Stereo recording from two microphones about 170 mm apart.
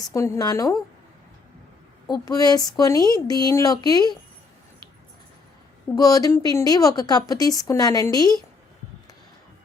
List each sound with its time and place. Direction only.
0.0 s a woman's voice: 20° left (ahead or behind)
2.0 s a woman's voice: 20° left (ahead or behind)
6.0 s a woman's voice: 20° left (ahead or behind)